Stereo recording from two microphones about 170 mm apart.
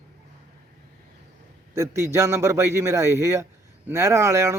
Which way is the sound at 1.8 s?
15° right (ahead or behind).